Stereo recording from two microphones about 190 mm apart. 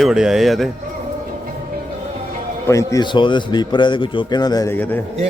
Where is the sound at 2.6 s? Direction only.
15° left (ahead or behind).